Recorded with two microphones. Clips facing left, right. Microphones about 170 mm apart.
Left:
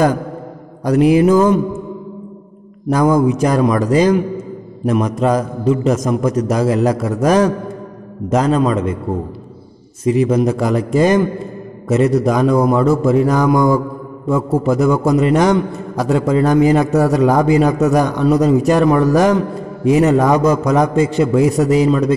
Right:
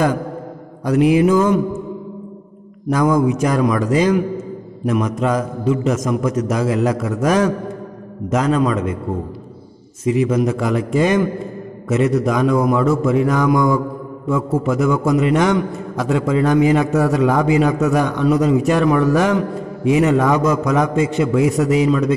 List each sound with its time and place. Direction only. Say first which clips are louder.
0.8 s a man's voice: left 2 dB; 40° left (ahead or behind)
2.9 s a man's voice: left 2 dB; 35° left (ahead or behind)
10.0 s a man's voice: left 3 dB; 35° left (ahead or behind)